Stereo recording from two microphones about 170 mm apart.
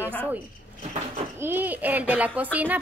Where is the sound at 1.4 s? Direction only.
10° right (ahead or behind).